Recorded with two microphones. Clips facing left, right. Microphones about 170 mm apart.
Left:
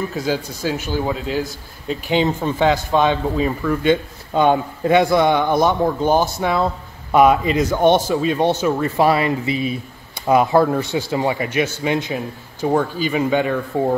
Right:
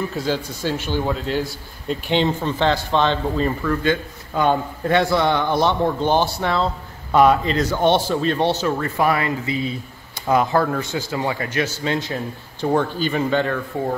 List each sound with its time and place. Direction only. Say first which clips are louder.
0.1 s a man's voice: left 1 dB; 10° left (ahead or behind)
3.8 s a man's voice: left 4 dB; 20° left (ahead or behind)